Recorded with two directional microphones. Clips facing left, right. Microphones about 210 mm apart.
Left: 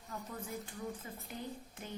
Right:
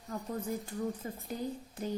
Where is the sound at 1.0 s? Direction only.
40° right (ahead or behind).